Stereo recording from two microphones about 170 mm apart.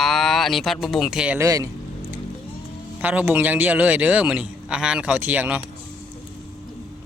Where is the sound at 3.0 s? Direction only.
10° right (ahead or behind).